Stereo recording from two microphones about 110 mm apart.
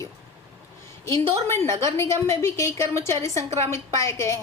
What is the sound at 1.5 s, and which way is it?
A woman's voice, 25° left (ahead or behind).